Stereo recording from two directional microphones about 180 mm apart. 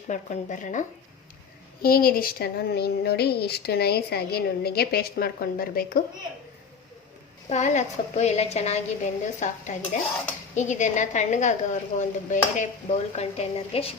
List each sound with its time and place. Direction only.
0.1 s a woman's voice: 45° left (ahead or behind)
1.8 s speech: 55° left (ahead or behind)
7.5 s a woman's voice: 40° left (ahead or behind)